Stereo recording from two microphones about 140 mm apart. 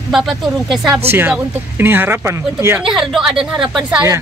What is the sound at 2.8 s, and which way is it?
A woman's voice, 5° right (ahead or behind).